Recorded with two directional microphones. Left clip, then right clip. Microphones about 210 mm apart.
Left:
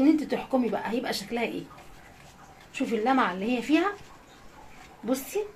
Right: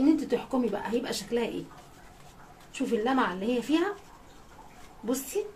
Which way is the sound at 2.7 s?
20° left (ahead or behind).